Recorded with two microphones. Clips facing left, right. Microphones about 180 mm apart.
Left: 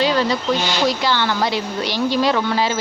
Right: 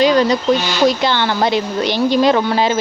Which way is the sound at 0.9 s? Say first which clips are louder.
Right 5 dB; 25° right (ahead or behind).